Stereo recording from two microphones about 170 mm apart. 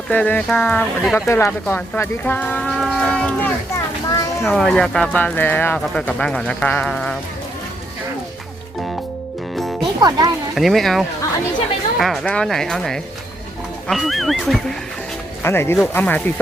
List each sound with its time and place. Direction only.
0.1 s speech: 10° left (ahead or behind)
4.1 s a sound: 20° left (ahead or behind)
4.4 s speech: 5° left (ahead or behind)
9.6 s music: centre (ahead or behind)
10.0 s speech: 20° right (ahead or behind)
10.5 s speech: centre (ahead or behind)
15.4 s speech: 15° left (ahead or behind)